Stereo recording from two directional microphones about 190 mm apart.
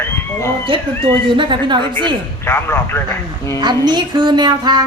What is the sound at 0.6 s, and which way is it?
A woman's voice, 25° right (ahead or behind).